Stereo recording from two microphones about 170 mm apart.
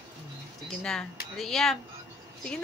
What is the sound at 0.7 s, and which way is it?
A woman's voice, 5° left (ahead or behind).